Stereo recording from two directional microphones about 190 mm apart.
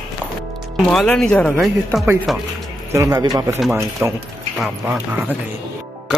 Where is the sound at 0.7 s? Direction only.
5° left (ahead or behind).